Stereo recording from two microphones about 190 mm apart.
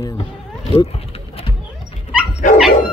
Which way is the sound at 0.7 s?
30° left (ahead or behind).